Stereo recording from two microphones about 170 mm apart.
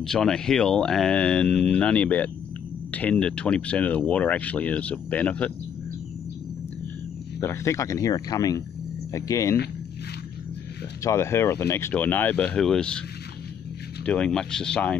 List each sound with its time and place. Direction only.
0.0 s speech: 5° left (ahead or behind)
7.3 s speech: 15° left (ahead or behind)
11.1 s speech: 15° left (ahead or behind)
14.0 s speech: 5° left (ahead or behind)